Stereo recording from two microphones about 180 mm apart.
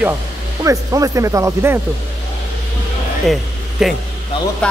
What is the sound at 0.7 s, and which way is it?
Speech, 20° right (ahead or behind).